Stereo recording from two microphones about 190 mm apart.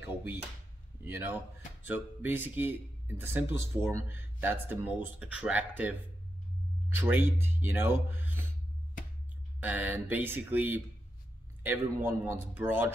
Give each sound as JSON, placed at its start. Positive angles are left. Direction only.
{"t": 1.0, "sound": "speech", "side_deg": -10}
{"t": 9.6, "sound": "speech", "side_deg": -10}